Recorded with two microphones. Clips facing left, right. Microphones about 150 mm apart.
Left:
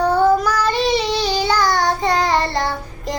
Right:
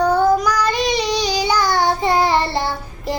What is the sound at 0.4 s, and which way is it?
Child singing, 5° left (ahead or behind).